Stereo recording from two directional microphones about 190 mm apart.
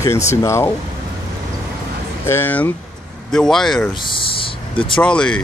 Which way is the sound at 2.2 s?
10° left (ahead or behind).